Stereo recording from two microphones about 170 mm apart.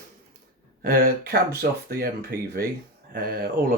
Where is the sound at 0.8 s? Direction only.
60° right (ahead or behind).